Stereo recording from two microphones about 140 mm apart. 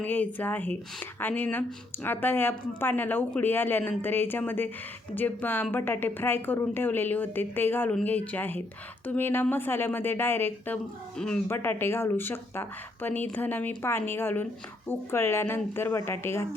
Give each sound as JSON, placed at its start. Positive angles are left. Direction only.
{"t": 0.0, "sound": "speech", "side_deg": 10}